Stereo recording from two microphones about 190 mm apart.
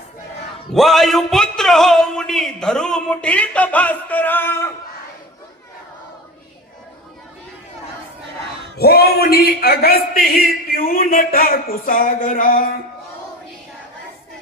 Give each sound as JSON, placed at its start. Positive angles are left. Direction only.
{"t": 0.7, "sound": "speech", "side_deg": 0}
{"t": 8.8, "sound": "a man's voice", "side_deg": 55}